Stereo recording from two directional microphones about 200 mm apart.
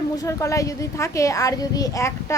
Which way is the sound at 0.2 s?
15° left (ahead or behind).